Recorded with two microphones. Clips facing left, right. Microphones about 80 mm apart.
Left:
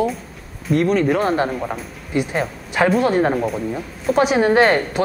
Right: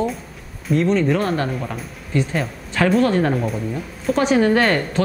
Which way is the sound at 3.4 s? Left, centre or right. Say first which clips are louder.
Left 2 dB; centre.